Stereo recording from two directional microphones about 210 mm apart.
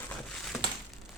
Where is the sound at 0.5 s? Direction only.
Centre (ahead or behind).